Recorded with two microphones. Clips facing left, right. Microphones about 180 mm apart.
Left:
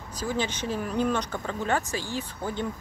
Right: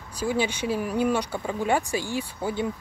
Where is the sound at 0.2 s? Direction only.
10° right (ahead or behind).